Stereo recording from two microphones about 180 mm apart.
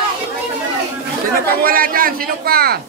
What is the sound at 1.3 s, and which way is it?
Speech, 55° right (ahead or behind).